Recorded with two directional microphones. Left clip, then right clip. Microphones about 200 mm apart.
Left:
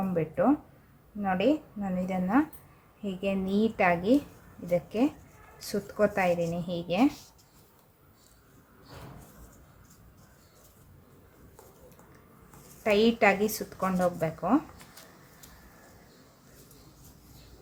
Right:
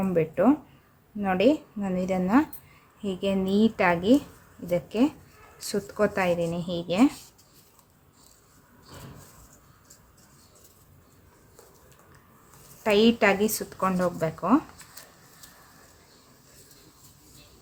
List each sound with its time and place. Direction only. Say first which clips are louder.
0.1 s speech: right 4 dB; 30° right (ahead or behind)
12.8 s speech: right 2 dB; 20° right (ahead or behind)